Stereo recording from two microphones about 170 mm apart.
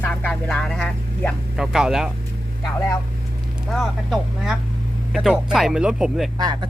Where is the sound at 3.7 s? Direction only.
Centre (ahead or behind).